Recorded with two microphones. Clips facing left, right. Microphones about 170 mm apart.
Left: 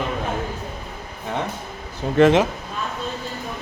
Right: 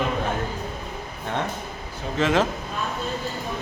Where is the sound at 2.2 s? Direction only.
60° left (ahead or behind).